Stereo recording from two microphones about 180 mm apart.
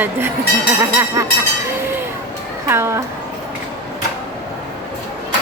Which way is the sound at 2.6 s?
15° right (ahead or behind).